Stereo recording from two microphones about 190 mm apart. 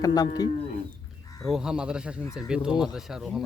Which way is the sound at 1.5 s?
5° right (ahead or behind).